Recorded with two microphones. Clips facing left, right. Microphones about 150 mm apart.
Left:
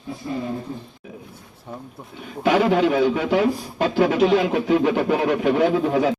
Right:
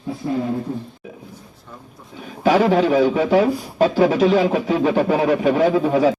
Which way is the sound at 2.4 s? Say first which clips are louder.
Right 2 dB; 40° right (ahead or behind).